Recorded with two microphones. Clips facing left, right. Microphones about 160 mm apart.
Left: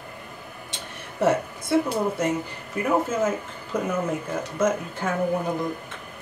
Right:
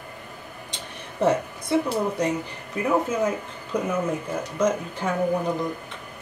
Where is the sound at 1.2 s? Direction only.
15° right (ahead or behind).